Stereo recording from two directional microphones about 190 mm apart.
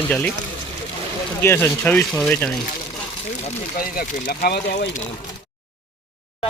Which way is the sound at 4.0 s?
50° left (ahead or behind).